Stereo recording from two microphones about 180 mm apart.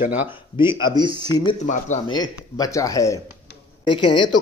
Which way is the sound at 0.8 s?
20° right (ahead or behind).